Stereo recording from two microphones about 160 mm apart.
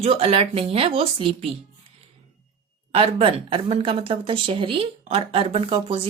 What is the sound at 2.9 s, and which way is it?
Speech, 40° right (ahead or behind).